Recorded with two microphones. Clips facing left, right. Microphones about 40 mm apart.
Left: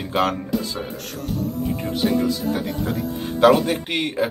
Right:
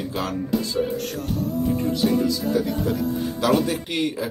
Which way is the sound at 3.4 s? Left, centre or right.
Left.